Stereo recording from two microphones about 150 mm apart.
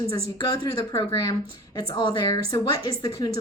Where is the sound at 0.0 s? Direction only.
25° left (ahead or behind).